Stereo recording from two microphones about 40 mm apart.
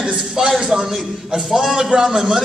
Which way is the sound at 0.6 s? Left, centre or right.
Centre.